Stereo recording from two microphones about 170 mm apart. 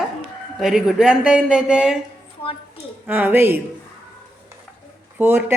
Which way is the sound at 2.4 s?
35° left (ahead or behind).